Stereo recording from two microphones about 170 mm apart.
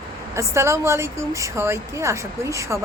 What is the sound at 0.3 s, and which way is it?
A woman's voice, 15° right (ahead or behind).